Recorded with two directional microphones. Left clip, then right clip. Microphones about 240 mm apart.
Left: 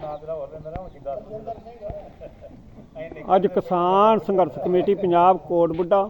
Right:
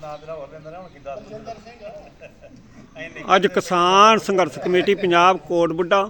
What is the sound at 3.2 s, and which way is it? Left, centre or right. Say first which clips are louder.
A man's voice: right 2 dB; right.